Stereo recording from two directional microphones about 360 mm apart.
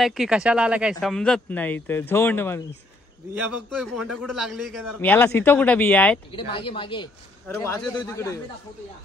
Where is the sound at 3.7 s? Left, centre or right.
Centre.